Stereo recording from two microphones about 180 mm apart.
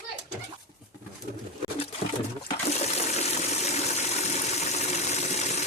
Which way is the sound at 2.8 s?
35° left (ahead or behind).